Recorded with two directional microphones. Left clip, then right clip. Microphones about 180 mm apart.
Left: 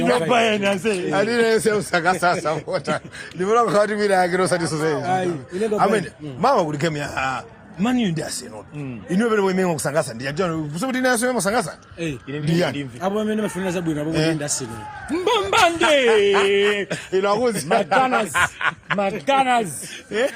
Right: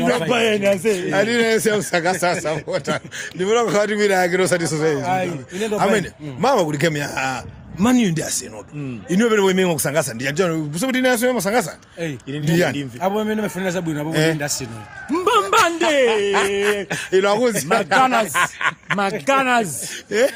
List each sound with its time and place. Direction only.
0.2 s a man's voice: 40° right (ahead or behind)
0.6 s a man's voice: 25° right (ahead or behind)
5.0 s a man's voice: 60° right (ahead or behind)
5.8 s a man's voice: 30° right (ahead or behind)
10.9 s speech: 20° right (ahead or behind)
11.9 s a man's voice: 50° right (ahead or behind)
12.5 s a man's voice: 30° right (ahead or behind)
12.7 s a man's voice: 50° right (ahead or behind)
14.3 s a man's voice: 55° right (ahead or behind)
15.1 s a sound: 45° right (ahead or behind)
15.9 s a man's voice: 30° right (ahead or behind)
16.9 s a man's voice: 40° right (ahead or behind)
18.9 s a man's voice: 55° right (ahead or behind)
20.1 s a man's voice: 40° right (ahead or behind)